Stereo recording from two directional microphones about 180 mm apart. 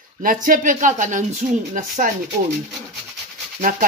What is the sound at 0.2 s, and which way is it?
Speech, 50° right (ahead or behind).